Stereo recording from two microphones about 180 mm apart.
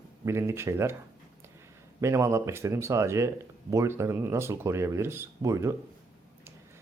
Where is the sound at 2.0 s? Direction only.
15° right (ahead or behind).